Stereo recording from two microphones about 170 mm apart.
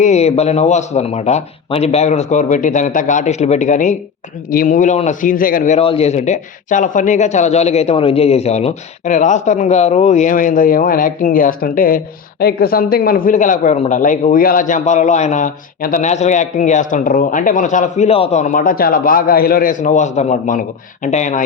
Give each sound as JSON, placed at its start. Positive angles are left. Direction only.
{"t": 0.0, "sound": "speech", "side_deg": 40}
{"t": 5.8, "sound": "speech", "side_deg": 35}